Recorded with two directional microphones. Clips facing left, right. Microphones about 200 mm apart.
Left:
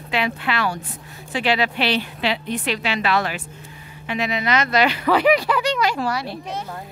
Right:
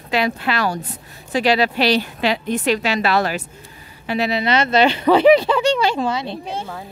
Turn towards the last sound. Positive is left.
turn(degrees=-25)  # may be behind; listen again after turning